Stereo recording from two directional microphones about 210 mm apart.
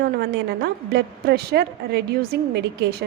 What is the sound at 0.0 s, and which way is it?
A woman's voice, 50° right (ahead or behind).